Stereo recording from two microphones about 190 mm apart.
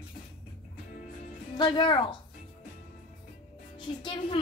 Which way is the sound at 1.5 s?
25° left (ahead or behind).